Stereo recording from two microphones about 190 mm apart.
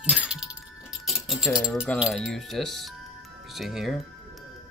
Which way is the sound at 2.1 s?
Centre (ahead or behind).